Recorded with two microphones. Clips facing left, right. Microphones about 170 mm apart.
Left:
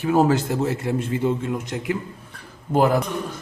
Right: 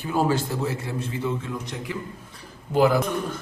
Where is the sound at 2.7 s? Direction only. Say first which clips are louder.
Left 1 dB; 50° left (ahead or behind).